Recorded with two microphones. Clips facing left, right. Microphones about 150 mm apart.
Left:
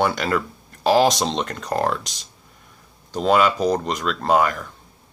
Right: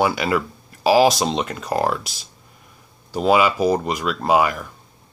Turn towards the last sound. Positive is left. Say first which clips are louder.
# right 1 dB
turn(degrees=-10)  # may be behind; listen again after turning